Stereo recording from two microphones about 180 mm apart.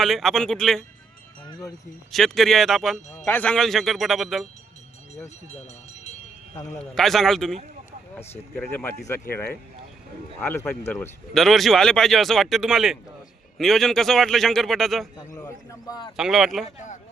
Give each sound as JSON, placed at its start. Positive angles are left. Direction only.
{"t": 0.0, "sound": "speech", "side_deg": 0}
{"t": 1.5, "sound": "a sound", "side_deg": 20}
{"t": 2.1, "sound": "speech", "side_deg": 0}
{"t": 5.2, "sound": "speech", "side_deg": 35}
{"t": 6.9, "sound": "speech", "side_deg": 0}
{"t": 11.3, "sound": "speech", "side_deg": 0}
{"t": 15.3, "sound": "a man's voice", "side_deg": 20}
{"t": 16.1, "sound": "speech", "side_deg": 0}
{"t": 16.6, "sound": "speech", "side_deg": 45}